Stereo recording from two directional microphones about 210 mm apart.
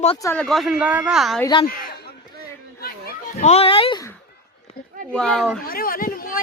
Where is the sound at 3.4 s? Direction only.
30° left (ahead or behind).